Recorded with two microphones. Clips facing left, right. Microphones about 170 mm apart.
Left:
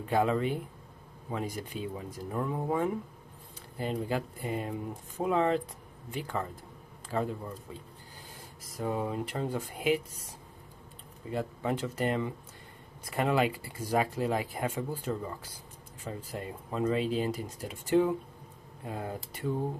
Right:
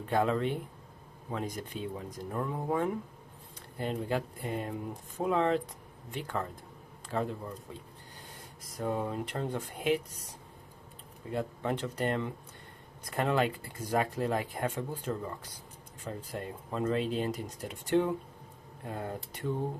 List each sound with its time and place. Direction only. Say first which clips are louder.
0.0 s speech: left 1 dB; 5° left (ahead or behind)
8.4 s speech: left 1 dB; 5° left (ahead or behind)